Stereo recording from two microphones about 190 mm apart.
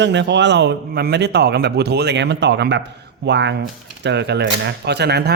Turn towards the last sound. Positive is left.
turn(degrees=-60)  # may be behind; listen again after turning